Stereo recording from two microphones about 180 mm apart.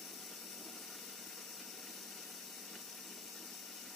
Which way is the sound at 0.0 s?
Centre (ahead or behind).